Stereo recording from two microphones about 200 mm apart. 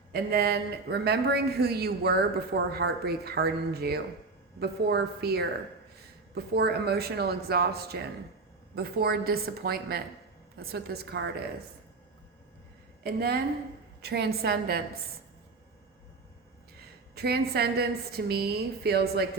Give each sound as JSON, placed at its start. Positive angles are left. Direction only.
{"t": 0.1, "sound": "a man's voice", "side_deg": -50}
{"t": 13.0, "sound": "a woman's voice", "side_deg": -50}
{"t": 17.2, "sound": "a man's voice", "side_deg": -55}